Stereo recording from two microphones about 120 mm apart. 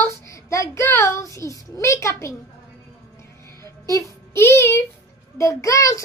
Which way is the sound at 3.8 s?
25° left (ahead or behind).